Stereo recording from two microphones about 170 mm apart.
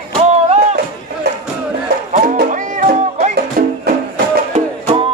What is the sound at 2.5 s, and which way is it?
Music, 50° right (ahead or behind).